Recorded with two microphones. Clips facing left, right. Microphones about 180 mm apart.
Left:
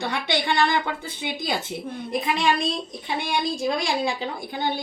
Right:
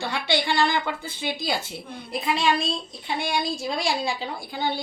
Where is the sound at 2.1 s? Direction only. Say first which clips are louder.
Left 1 dB; 20° left (ahead or behind).